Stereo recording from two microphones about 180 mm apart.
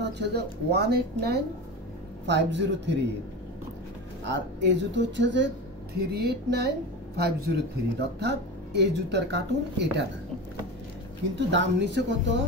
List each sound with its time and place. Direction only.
0.0 s a woman's voice: 70° right (ahead or behind)
2.2 s speech: 75° right (ahead or behind)
4.2 s speech: 75° right (ahead or behind)
5.9 s a woman's voice: 65° right (ahead or behind)
11.3 s speech: 80° right